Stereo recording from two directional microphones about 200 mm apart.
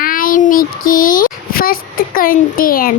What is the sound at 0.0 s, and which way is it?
A child's voice, 45° left (ahead or behind).